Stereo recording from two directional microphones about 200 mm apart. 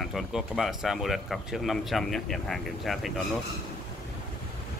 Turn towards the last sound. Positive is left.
turn(degrees=0)  # may be behind; listen again after turning